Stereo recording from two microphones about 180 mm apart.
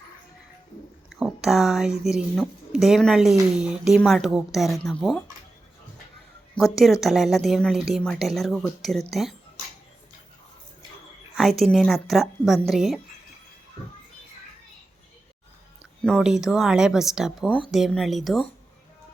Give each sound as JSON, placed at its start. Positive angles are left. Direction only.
{"t": 1.1, "sound": "speech", "side_deg": 0}
{"t": 6.6, "sound": "speech", "side_deg": 25}
{"t": 7.0, "sound": "speech", "side_deg": 0}
{"t": 11.3, "sound": "speech", "side_deg": 0}
{"t": 16.0, "sound": "speech", "side_deg": 0}